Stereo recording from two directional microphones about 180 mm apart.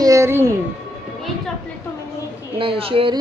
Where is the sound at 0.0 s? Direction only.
15° right (ahead or behind).